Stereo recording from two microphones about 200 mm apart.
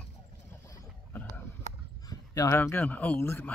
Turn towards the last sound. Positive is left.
turn(degrees=15)  # may be behind; listen again after turning